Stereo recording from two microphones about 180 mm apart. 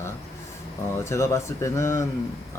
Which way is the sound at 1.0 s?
15° left (ahead or behind).